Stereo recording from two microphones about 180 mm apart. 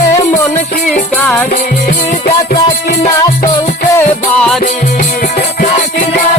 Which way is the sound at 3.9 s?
10° left (ahead or behind).